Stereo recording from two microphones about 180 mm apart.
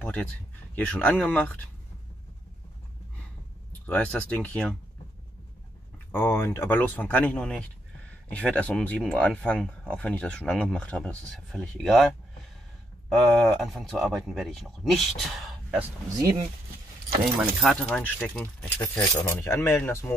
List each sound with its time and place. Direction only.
0.7 s speech: 10° left (ahead or behind)
3.8 s speech: 10° left (ahead or behind)
6.1 s speech: 10° left (ahead or behind)
13.1 s speech: centre (ahead or behind)
16.2 s speech: 20° right (ahead or behind)
17.4 s speech: centre (ahead or behind)